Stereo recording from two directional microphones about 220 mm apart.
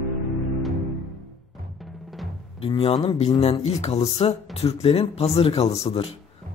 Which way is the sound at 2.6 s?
25° left (ahead or behind).